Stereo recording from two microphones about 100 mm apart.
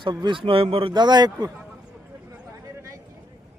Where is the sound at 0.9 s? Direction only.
45° right (ahead or behind).